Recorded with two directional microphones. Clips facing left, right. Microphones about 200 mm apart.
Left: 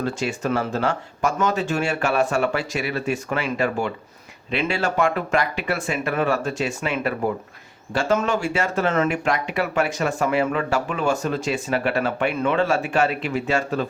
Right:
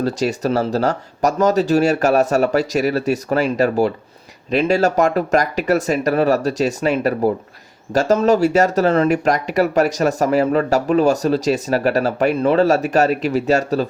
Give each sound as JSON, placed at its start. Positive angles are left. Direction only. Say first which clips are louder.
{"t": 0.0, "sound": "speech", "louder": "right 6 dB", "side_deg": -40}